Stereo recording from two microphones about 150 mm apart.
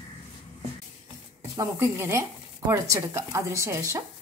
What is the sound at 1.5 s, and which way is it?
Speech, 15° right (ahead or behind).